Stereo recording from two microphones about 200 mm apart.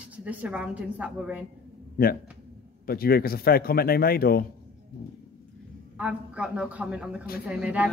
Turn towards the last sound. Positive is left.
turn(degrees=-5)  # may be behind; listen again after turning